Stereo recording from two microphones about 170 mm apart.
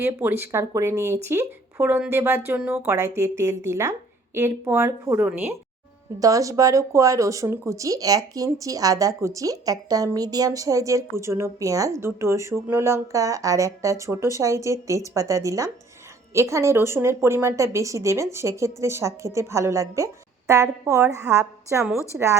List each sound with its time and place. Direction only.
0.0 s speech: 15° right (ahead or behind)